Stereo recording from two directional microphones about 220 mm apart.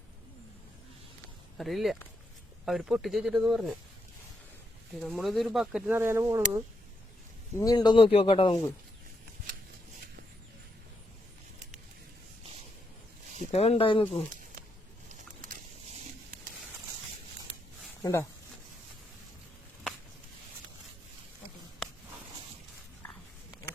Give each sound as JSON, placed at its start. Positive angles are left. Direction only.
{"t": 1.5, "sound": "speech", "side_deg": 0}
{"t": 4.9, "sound": "speech", "side_deg": 0}
{"t": 7.5, "sound": "speech", "side_deg": 15}
{"t": 13.4, "sound": "speech", "side_deg": 25}
{"t": 15.1, "sound": "a sound", "side_deg": -35}
{"t": 18.0, "sound": "speech", "side_deg": 10}